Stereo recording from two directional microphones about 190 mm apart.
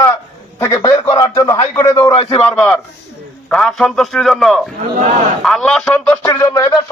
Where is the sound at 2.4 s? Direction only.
5° left (ahead or behind).